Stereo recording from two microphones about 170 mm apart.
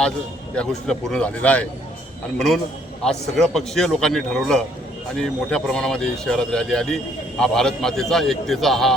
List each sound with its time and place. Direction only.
0.5 s speech: 5° left (ahead or behind)
3.0 s speech: 5° left (ahead or behind)